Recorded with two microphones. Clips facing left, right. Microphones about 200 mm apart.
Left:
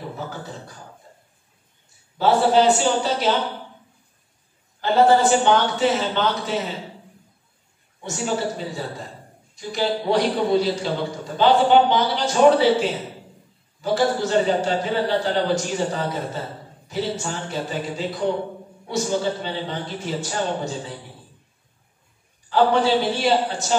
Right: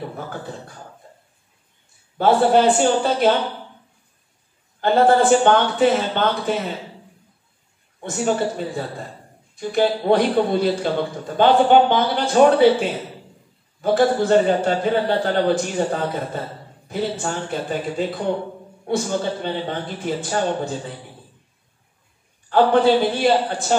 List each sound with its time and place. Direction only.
2.1 s speech: 55° right (ahead or behind)
4.7 s speech: 55° right (ahead or behind)
8.0 s a man's voice: 55° right (ahead or behind)
22.5 s speech: 55° right (ahead or behind)